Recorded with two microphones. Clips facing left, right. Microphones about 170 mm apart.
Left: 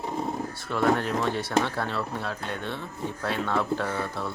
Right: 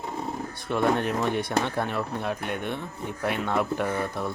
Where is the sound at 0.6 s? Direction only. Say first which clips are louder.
Right 1 dB; 20° right (ahead or behind).